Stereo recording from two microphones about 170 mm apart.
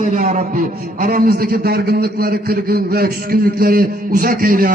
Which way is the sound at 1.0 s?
60° right (ahead or behind).